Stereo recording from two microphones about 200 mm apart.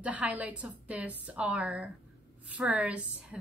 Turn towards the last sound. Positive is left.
turn(degrees=-5)  # may be behind; listen again after turning